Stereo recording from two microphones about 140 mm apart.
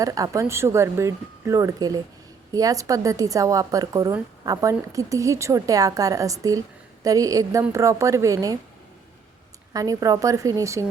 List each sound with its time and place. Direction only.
0.0 s a woman's voice: 25° right (ahead or behind)
9.7 s a woman's voice: 25° right (ahead or behind)